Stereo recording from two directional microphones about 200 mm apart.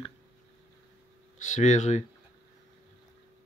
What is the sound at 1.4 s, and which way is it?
Speech, 35° left (ahead or behind).